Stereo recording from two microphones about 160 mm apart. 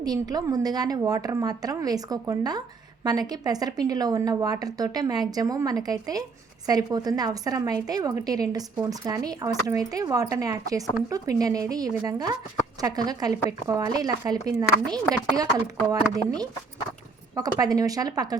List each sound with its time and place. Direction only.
0.0 s a woman's voice: 25° right (ahead or behind)